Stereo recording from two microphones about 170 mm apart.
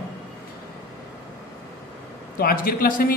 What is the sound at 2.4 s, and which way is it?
Speech, 55° left (ahead or behind).